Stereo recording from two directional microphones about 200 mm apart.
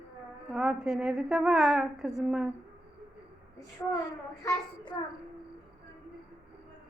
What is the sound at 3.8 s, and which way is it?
Speech, 10° left (ahead or behind).